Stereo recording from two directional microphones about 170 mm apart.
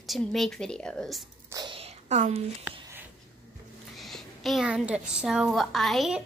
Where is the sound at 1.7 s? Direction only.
45° right (ahead or behind).